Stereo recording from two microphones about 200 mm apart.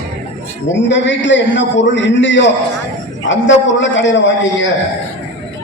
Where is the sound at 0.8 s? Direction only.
65° left (ahead or behind).